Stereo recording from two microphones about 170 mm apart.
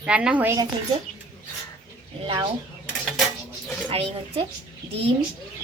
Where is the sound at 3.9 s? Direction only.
35° right (ahead or behind).